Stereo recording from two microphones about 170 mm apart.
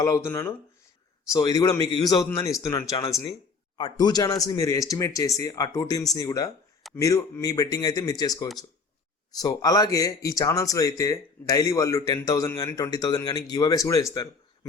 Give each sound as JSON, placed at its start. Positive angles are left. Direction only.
{"t": 0.0, "sound": "speech", "side_deg": 15}